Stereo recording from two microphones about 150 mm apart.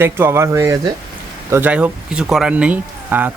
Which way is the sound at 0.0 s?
15° right (ahead or behind).